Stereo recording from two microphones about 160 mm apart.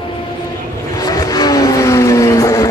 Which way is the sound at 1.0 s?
25° left (ahead or behind).